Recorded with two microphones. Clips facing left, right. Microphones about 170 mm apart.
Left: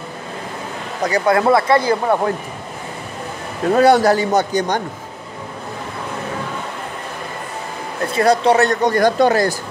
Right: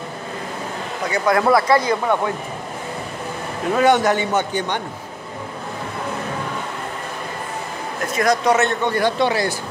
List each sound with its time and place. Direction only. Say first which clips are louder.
1.0 s speech: left 3 dB; 35° left (ahead or behind)
3.7 s speech: left 4 dB; 35° left (ahead or behind)
8.1 s speech: left 3 dB; 30° left (ahead or behind)